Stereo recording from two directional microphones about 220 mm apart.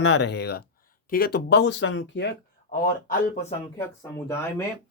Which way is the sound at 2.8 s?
40° left (ahead or behind).